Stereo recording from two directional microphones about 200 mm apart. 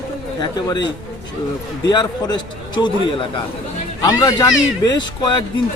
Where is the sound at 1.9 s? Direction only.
20° left (ahead or behind).